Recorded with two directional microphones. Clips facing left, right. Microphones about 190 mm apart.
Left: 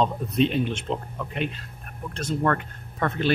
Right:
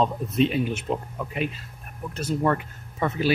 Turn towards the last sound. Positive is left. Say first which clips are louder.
# right 1 dB
turn(degrees=-5)  # may be behind; listen again after turning